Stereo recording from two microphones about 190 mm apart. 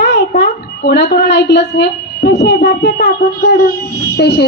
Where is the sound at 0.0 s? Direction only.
65° left (ahead or behind).